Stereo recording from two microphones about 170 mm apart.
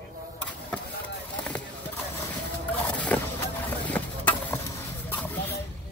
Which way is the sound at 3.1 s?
10° left (ahead or behind).